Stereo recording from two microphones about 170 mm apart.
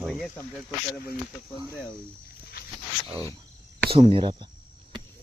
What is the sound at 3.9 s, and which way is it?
Speech, 35° right (ahead or behind).